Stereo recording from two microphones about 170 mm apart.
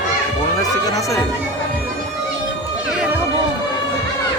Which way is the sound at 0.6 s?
20° left (ahead or behind).